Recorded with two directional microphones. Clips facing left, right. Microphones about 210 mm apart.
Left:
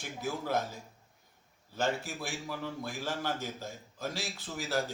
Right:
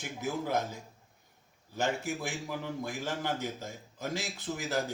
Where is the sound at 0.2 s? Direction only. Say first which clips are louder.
Right 1 dB; 20° right (ahead or behind).